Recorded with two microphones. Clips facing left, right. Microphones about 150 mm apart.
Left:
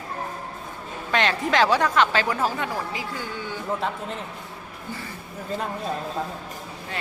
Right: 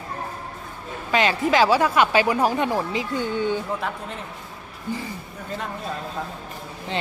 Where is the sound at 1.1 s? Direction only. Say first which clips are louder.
Right 3 dB; 5° right (ahead or behind); by 3.6 s 20° right (ahead or behind).